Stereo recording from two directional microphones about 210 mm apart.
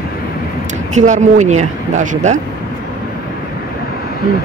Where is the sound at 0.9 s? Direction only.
35° right (ahead or behind).